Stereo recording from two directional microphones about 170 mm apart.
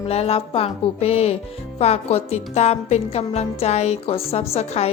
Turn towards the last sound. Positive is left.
turn(degrees=40)  # may be behind; listen again after turning